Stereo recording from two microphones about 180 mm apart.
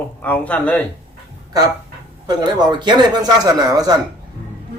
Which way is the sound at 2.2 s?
25° right (ahead or behind).